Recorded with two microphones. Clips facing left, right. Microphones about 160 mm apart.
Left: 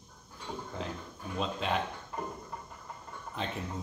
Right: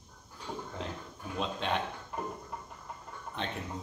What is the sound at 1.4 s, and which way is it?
Speech, centre (ahead or behind).